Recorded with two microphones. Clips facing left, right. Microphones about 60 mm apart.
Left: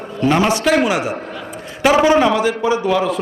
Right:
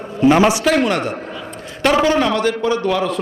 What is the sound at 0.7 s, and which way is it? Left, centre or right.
A man's voice, centre.